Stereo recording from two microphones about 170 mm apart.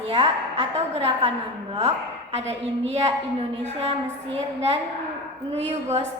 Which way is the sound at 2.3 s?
40° right (ahead or behind).